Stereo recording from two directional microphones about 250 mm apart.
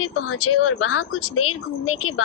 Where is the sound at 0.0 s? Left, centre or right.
Left.